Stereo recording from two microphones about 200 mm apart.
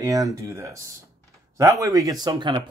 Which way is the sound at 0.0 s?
15° right (ahead or behind).